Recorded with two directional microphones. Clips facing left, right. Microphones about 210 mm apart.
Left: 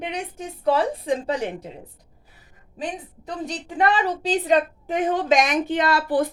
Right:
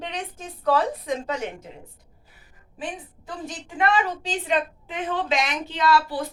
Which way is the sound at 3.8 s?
35° left (ahead or behind).